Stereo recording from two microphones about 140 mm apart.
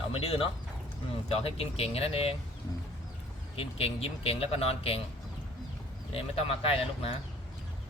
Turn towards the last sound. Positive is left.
turn(degrees=45)  # may be behind; listen again after turning